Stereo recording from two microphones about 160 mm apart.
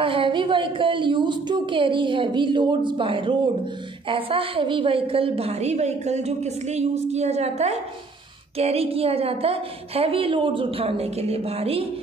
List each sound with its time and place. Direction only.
0.0 s a woman's voice: 35° right (ahead or behind)